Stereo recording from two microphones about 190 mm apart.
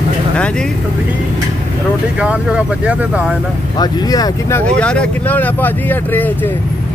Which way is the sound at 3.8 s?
20° left (ahead or behind).